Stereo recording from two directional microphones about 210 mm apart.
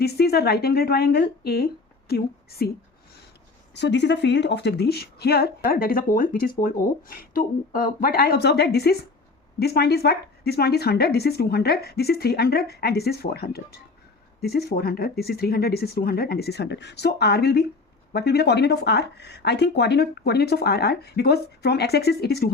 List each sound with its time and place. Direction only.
0.0 s a woman's voice: 50° left (ahead or behind)
3.8 s a woman's voice: 55° left (ahead or behind)